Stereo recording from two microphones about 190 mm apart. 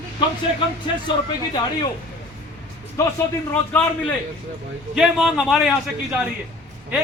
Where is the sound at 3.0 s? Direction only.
15° left (ahead or behind).